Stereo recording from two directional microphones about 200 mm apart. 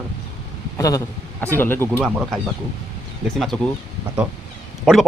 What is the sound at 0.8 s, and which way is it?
A man's voice, 15° left (ahead or behind).